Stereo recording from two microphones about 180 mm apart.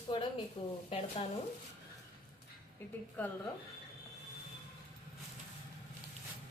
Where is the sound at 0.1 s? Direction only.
25° left (ahead or behind).